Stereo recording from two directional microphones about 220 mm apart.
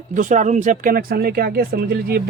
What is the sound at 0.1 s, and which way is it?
Speech, 35° right (ahead or behind).